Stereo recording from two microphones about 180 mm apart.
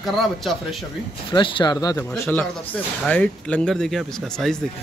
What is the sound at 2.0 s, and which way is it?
A man's voice, 10° left (ahead or behind).